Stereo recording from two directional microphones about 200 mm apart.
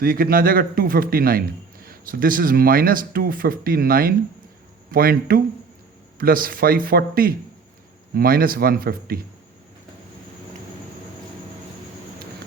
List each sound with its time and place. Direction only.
0.0 s speech: 45° right (ahead or behind)